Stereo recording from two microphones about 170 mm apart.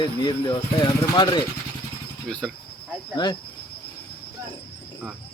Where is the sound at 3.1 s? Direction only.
25° left (ahead or behind).